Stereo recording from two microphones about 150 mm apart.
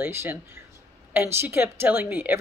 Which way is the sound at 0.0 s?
15° right (ahead or behind).